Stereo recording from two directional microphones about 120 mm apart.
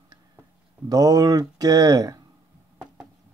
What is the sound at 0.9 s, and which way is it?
Speech, 30° right (ahead or behind).